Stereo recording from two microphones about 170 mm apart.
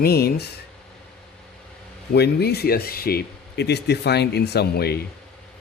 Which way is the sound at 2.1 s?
70° left (ahead or behind).